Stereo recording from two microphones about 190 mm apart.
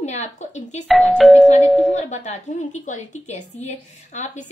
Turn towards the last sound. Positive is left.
turn(degrees=40)  # may be behind; listen again after turning